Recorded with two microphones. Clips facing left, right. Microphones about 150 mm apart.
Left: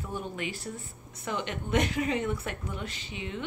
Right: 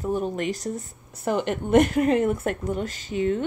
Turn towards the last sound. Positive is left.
turn(degrees=-45)  # may be behind; listen again after turning